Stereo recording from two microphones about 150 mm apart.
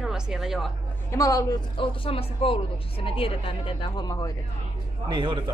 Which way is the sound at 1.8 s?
40° left (ahead or behind).